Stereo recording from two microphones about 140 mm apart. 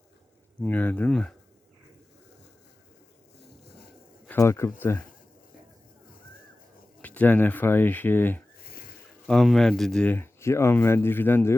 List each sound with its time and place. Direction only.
0.6 s speech: 10° left (ahead or behind)
4.3 s speech: 20° left (ahead or behind)
7.0 s speech: 10° left (ahead or behind)
8.5 s a sound: 90° left
9.2 s speech: centre (ahead or behind)